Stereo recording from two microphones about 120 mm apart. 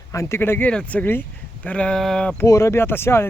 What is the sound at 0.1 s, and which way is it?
Speech, 25° left (ahead or behind).